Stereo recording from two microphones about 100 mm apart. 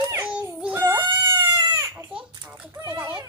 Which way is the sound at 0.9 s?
50° right (ahead or behind).